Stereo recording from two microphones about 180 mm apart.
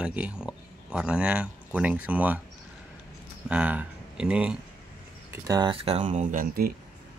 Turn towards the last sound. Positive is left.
turn(degrees=-50)  # may be behind; listen again after turning